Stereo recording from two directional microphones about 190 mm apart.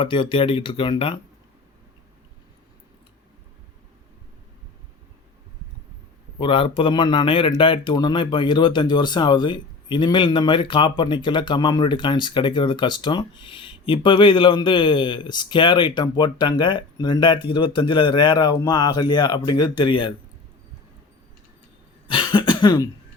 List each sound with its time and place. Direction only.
0.0 s speech: 25° left (ahead or behind)
6.4 s speech: 25° left (ahead or behind)
22.0 s cough: 25° left (ahead or behind)